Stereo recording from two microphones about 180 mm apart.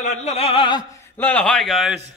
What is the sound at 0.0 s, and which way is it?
A man's voice, 40° left (ahead or behind).